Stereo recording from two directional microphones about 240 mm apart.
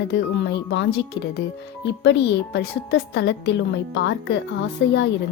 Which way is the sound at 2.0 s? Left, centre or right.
Left.